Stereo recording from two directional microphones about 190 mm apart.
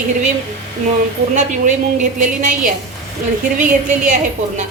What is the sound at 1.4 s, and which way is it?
A woman's voice, 40° right (ahead or behind).